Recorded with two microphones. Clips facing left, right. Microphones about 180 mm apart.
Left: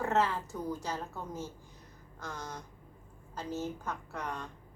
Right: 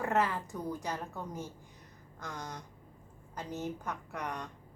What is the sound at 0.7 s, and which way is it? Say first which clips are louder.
A woman's voice: even; 15° right (ahead or behind).